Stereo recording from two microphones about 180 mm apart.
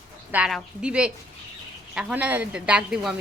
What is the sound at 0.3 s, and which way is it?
A woman's voice, 5° right (ahead or behind).